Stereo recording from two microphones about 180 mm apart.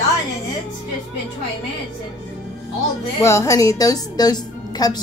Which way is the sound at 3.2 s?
15° left (ahead or behind).